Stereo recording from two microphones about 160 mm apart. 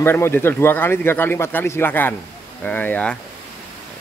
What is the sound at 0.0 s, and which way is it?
Speech, 15° left (ahead or behind).